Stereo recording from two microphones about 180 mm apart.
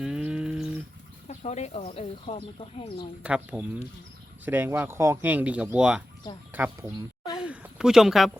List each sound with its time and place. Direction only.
0.0 s livestock: 5° right (ahead or behind)
1.3 s speech: 40° left (ahead or behind)
3.2 s speech: 5° right (ahead or behind)
7.3 s a sound: 5° right (ahead or behind)